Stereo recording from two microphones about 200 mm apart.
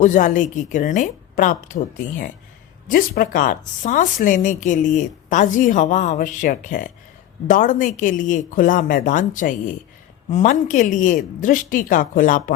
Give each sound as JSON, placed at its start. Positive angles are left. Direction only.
{"t": 0.0, "sound": "speech", "side_deg": 40}